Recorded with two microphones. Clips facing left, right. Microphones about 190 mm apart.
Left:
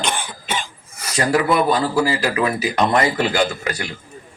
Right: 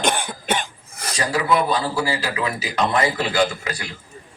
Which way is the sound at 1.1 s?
50° left (ahead or behind).